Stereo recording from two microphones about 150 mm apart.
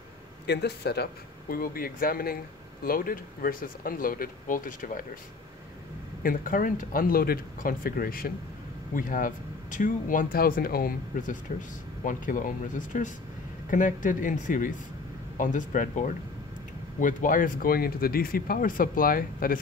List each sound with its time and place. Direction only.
0.5 s speech: 90° left
1.5 s speech: 75° left (ahead or behind)
6.2 s speech: 65° left (ahead or behind)
8.9 s speech: 65° left (ahead or behind)
12.0 s speech: 60° left (ahead or behind)